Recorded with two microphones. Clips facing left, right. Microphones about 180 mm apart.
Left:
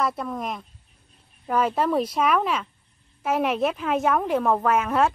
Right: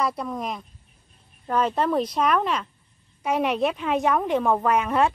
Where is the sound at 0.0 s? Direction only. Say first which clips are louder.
Even; centre (ahead or behind).